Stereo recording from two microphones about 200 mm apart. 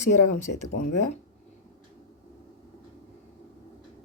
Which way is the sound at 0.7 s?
40° left (ahead or behind).